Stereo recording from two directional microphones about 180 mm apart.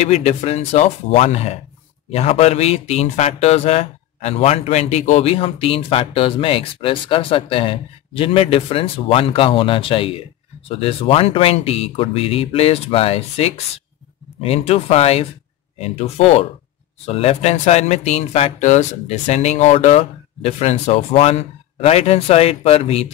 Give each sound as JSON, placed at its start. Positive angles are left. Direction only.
{"t": 0.0, "sound": "speech", "side_deg": 35}